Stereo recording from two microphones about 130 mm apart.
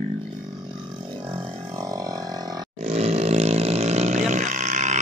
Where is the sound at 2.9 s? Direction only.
55° right (ahead or behind).